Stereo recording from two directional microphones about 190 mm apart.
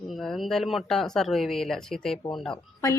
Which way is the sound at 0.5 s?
Centre (ahead or behind).